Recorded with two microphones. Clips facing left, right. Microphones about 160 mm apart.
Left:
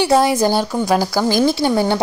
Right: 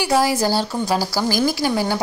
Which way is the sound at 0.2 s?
20° left (ahead or behind).